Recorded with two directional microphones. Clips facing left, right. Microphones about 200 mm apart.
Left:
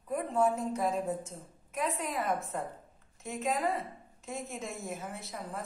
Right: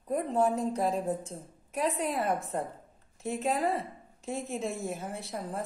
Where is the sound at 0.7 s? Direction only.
30° right (ahead or behind).